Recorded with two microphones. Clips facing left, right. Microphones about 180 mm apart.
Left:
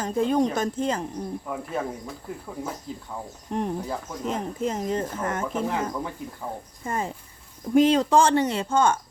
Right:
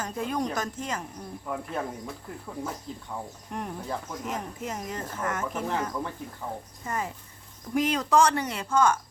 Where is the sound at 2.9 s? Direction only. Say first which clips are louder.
Left 3 dB; 5° left (ahead or behind).